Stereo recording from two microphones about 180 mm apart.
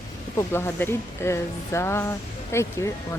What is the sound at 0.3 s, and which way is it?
Speech, 15° left (ahead or behind).